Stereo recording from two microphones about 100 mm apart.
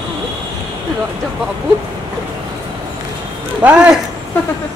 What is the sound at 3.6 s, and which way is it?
Speech, 10° right (ahead or behind).